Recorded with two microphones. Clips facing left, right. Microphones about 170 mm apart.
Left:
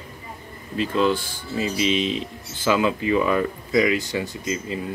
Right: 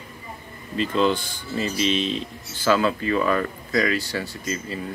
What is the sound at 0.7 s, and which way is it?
Speech, 5° left (ahead or behind).